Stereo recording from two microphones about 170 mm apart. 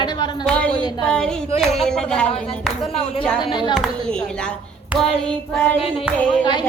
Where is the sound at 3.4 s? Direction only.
25° left (ahead or behind).